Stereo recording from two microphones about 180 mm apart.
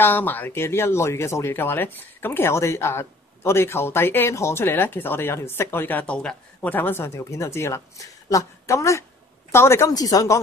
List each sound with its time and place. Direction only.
0.0 s speech: 10° left (ahead or behind)